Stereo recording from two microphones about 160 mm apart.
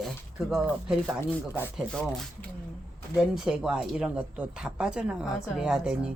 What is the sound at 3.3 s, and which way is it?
Speech, 5° right (ahead or behind).